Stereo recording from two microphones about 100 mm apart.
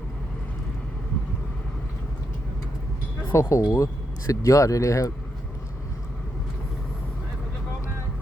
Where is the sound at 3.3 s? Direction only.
30° left (ahead or behind).